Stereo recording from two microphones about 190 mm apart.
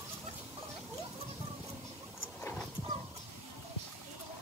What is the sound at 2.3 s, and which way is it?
Horse, 10° left (ahead or behind).